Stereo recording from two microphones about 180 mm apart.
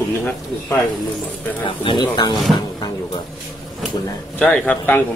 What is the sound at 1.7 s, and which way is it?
Speech, 25° left (ahead or behind).